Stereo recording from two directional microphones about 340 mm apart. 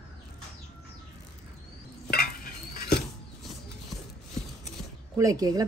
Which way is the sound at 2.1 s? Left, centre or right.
Left.